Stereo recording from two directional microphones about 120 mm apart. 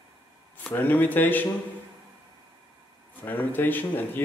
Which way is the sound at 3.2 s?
15° left (ahead or behind).